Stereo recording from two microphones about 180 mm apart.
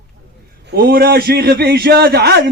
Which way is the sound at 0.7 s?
60° right (ahead or behind).